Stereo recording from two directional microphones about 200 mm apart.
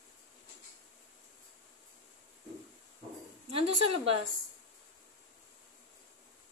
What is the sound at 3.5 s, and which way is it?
Speech, 30° right (ahead or behind).